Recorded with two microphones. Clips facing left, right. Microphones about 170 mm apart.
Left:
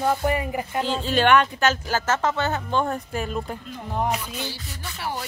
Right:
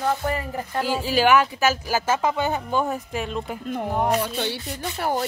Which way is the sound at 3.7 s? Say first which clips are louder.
Right 6 dB; 60° right (ahead or behind).